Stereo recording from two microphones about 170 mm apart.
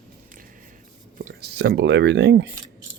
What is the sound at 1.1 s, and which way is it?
Speech, 65° right (ahead or behind).